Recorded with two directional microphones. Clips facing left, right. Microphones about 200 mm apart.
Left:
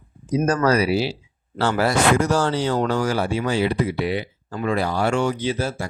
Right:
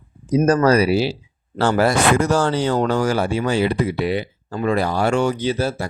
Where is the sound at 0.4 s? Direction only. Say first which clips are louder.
Right 4 dB; 35° right (ahead or behind).